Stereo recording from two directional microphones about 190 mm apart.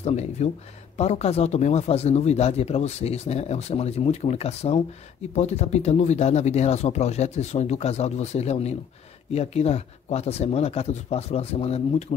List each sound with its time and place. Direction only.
0.0 s speech: 35° left (ahead or behind)